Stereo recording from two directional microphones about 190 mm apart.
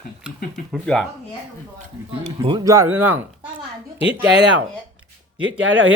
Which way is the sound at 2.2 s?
25° right (ahead or behind).